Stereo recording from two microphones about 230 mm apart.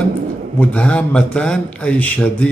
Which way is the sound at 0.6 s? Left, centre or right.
Centre.